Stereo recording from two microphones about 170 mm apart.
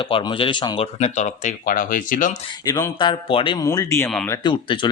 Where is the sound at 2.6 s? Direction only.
20° left (ahead or behind).